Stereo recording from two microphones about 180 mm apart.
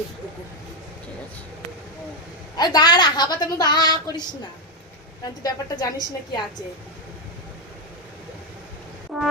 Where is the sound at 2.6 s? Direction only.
25° left (ahead or behind).